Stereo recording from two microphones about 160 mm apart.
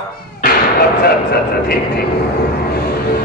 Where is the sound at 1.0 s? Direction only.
80° left.